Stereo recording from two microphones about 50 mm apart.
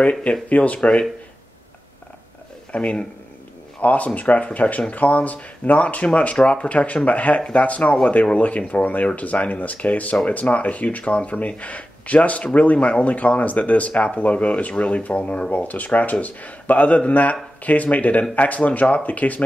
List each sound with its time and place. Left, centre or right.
0.0 s speech: left
0.7 s speech: centre
2.7 s speech: left